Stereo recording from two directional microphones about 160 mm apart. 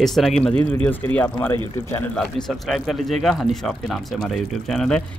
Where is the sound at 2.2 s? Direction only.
Centre (ahead or behind).